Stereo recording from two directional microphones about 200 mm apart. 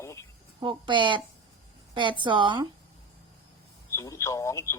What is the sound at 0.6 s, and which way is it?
Speech, 25° right (ahead or behind).